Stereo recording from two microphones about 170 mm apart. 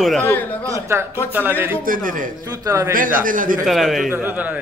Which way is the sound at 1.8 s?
55° right (ahead or behind).